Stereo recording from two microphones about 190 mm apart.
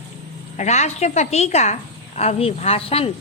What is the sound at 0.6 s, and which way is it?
A woman's voice, 35° left (ahead or behind).